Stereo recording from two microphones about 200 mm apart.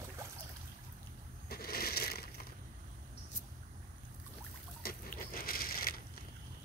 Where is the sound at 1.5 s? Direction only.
50° left (ahead or behind).